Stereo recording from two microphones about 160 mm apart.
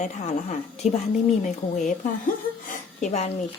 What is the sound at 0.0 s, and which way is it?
Speech, 45° left (ahead or behind).